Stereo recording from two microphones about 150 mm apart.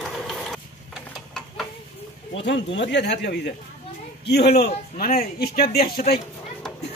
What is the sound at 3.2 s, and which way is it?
A man's voice, 90° left.